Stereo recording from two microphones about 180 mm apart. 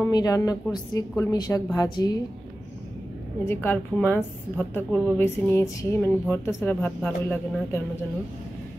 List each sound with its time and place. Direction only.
0.0 s a woman's voice: 20° left (ahead or behind)
3.4 s a woman's voice: 10° left (ahead or behind)